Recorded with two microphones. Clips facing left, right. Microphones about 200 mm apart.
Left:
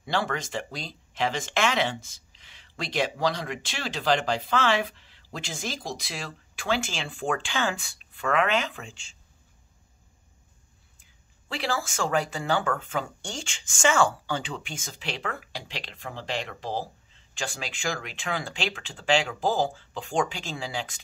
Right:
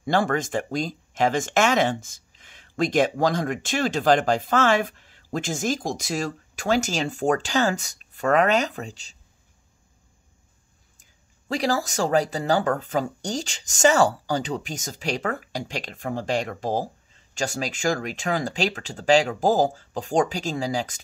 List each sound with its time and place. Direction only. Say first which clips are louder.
0.0 s speech: right 6 dB; 50° right (ahead or behind)
11.0 s speech: right 1 dB; 40° right (ahead or behind)